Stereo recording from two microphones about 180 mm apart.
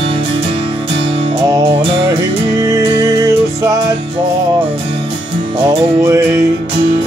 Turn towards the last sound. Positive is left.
turn(degrees=-15)  # may be behind; listen again after turning